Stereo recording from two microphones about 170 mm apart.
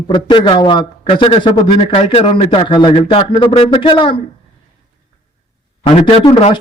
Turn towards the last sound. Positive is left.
turn(degrees=35)  # may be behind; listen again after turning